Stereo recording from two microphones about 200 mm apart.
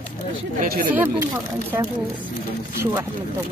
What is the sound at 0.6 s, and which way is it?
Speech, 45° right (ahead or behind).